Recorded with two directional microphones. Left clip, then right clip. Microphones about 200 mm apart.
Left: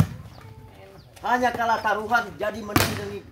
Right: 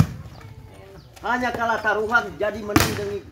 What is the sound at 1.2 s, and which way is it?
Speech, 50° left (ahead or behind).